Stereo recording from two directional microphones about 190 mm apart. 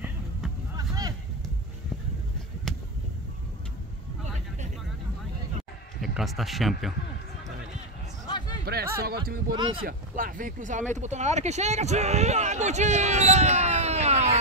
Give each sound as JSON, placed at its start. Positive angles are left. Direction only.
{"t": 0.7, "sound": "a sound", "side_deg": -20}
{"t": 5.9, "sound": "speech", "side_deg": 0}
{"t": 8.3, "sound": "a sound", "side_deg": 20}
{"t": 8.6, "sound": "speech", "side_deg": -55}
{"t": 9.6, "sound": "speech", "side_deg": -25}
{"t": 9.8, "sound": "speech", "side_deg": -45}